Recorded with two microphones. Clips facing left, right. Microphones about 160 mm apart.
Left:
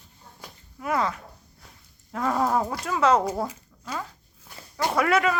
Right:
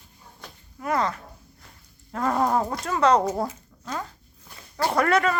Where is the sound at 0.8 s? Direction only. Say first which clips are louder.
Right 1 dB; 5° left (ahead or behind).